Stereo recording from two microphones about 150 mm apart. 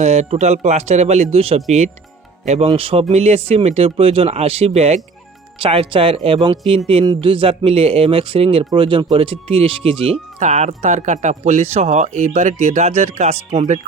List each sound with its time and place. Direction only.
0.0 s speech: 45° right (ahead or behind)
2.6 s speech: 40° right (ahead or behind)
10.4 s speech: 50° right (ahead or behind)